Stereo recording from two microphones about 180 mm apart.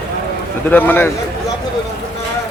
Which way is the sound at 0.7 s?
10° left (ahead or behind).